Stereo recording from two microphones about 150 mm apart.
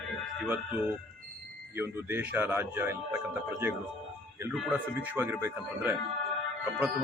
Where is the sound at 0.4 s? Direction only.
10° right (ahead or behind).